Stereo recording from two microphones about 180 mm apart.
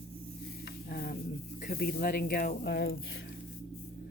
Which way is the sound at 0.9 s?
55° left (ahead or behind).